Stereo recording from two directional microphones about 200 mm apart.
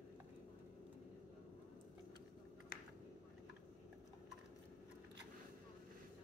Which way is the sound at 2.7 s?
50° left (ahead or behind).